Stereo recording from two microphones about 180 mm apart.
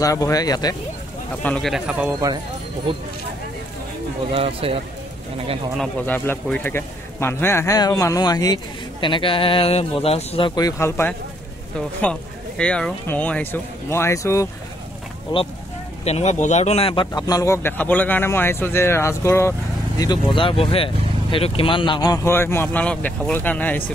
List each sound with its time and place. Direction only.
0.0 s speech: 20° left (ahead or behind)
1.4 s speech: 5° left (ahead or behind)
4.3 s speech: 30° right (ahead or behind)
5.8 s speech: 10° left (ahead or behind)
16.0 s speech: 35° left (ahead or behind); by 23.8 s 10° left (ahead or behind)